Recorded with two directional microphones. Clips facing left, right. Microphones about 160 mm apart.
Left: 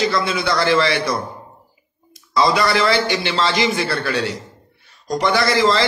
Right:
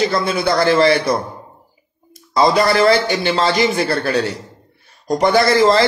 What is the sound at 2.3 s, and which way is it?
A man's voice, 45° right (ahead or behind).